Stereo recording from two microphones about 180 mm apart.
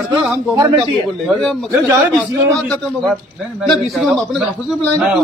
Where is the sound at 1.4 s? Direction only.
5° left (ahead or behind).